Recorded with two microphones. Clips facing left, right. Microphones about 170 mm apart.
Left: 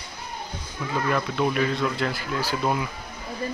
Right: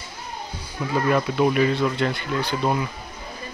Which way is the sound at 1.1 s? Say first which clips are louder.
Right 5 dB; 10° right (ahead or behind).